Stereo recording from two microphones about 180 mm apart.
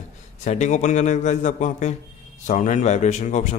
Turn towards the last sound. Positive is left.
turn(degrees=40)  # may be behind; listen again after turning